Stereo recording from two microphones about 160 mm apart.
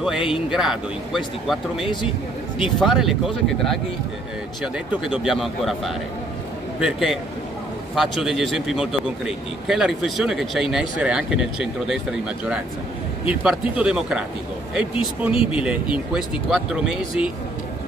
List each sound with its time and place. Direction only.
0.0 s a man's voice: 5° right (ahead or behind)
1.9 s speech: 30° left (ahead or behind)
2.6 s a man's voice: 5° right (ahead or behind)
5.0 s a man's voice: centre (ahead or behind)